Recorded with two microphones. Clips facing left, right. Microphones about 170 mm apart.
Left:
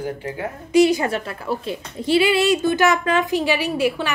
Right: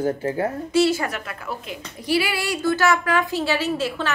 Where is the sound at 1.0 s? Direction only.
30° left (ahead or behind); by 4.1 s 15° left (ahead or behind).